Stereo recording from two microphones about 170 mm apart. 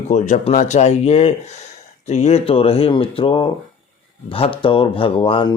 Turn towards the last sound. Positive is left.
turn(degrees=30)  # may be behind; listen again after turning